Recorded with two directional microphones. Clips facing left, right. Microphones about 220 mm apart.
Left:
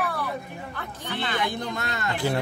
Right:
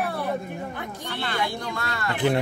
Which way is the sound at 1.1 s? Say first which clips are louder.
Left 1 dB; 20° left (ahead or behind).